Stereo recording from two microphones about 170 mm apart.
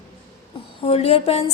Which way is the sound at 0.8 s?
35° left (ahead or behind).